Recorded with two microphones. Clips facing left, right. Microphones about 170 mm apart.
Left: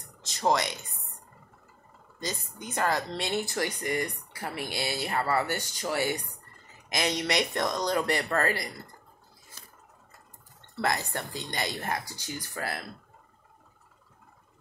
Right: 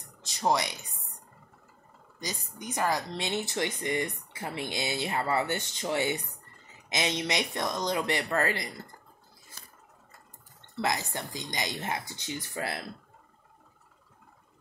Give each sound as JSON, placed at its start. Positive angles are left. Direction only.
{"t": 0.4, "sound": "speech", "side_deg": -15}
{"t": 2.1, "sound": "speech", "side_deg": -15}
{"t": 10.8, "sound": "speech", "side_deg": -15}